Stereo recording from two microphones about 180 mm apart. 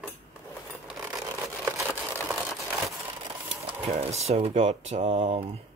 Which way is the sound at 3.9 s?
35° right (ahead or behind).